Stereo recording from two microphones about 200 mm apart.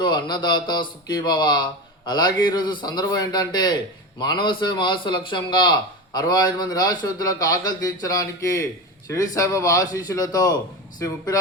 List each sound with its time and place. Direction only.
0.0 s a man's voice: 20° left (ahead or behind)